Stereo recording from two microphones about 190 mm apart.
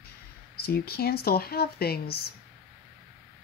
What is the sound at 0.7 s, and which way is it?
A woman's voice, 55° left (ahead or behind).